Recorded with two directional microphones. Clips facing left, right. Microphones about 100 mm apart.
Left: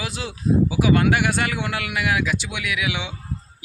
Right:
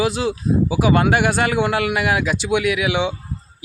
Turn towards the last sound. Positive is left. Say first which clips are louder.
# right 8 dB
turn(degrees=-35)  # may be behind; listen again after turning